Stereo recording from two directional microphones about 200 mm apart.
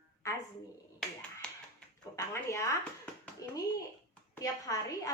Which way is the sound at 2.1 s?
15° left (ahead or behind).